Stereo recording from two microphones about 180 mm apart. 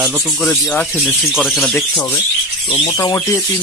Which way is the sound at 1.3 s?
Centre (ahead or behind).